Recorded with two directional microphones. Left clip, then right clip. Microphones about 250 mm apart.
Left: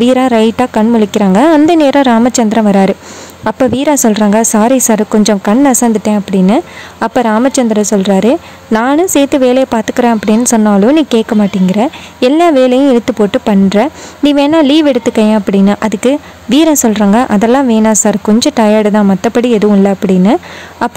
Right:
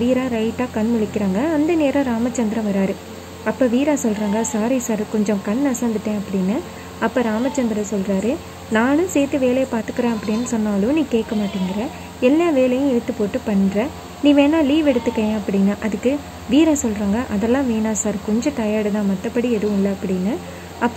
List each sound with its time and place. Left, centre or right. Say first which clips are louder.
0.0 s a woman's voice: left 12 dB; left